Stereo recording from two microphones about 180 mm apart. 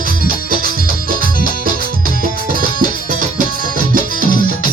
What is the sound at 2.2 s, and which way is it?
Music, 50° right (ahead or behind).